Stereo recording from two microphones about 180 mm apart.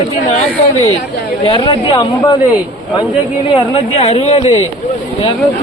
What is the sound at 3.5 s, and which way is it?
Speech, 35° left (ahead or behind).